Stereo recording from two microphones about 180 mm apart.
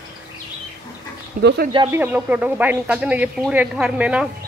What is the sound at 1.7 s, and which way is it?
Speech, 20° right (ahead or behind).